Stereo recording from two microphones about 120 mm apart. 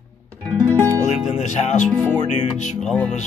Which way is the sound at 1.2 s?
80° left.